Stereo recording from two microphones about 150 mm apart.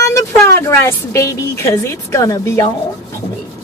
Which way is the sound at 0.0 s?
20° left (ahead or behind).